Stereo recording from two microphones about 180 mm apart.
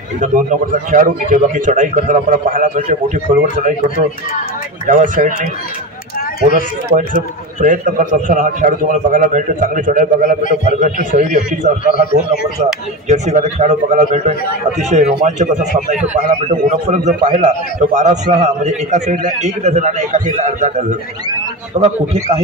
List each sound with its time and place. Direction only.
0.2 s a man's voice: 45° right (ahead or behind)
4.8 s a man's voice: 50° right (ahead or behind)
6.9 s a man's voice: 55° right (ahead or behind)
13.1 s a man's voice: 40° right (ahead or behind)
16.1 s a man's voice: 45° right (ahead or behind)